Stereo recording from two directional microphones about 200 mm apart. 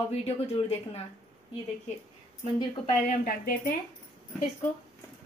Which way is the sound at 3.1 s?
45° left (ahead or behind).